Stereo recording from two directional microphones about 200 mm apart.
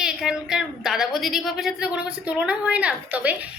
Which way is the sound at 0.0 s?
5° right (ahead or behind).